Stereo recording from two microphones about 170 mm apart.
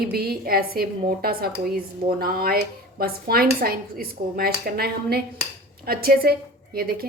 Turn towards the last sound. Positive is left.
turn(degrees=-60)  # may be behind; listen again after turning